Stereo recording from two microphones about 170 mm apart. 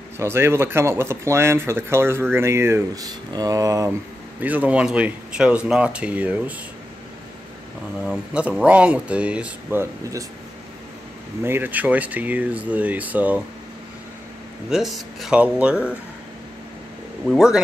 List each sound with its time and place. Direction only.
0.2 s speech: 15° right (ahead or behind)
4.4 s speech: 10° right (ahead or behind)
8.0 s speech: 5° right (ahead or behind)
11.4 s speech: 10° right (ahead or behind)
14.7 s speech: centre (ahead or behind)
17.3 s speech: 5° right (ahead or behind)